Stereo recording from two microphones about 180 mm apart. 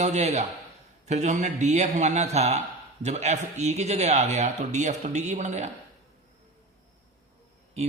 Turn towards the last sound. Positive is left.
turn(degrees=-35)  # may be behind; listen again after turning